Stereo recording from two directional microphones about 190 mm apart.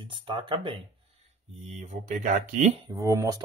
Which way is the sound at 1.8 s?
40° right (ahead or behind).